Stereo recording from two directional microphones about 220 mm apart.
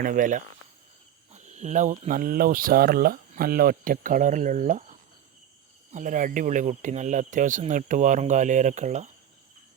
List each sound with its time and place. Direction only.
0.0 s speech: 35° right (ahead or behind)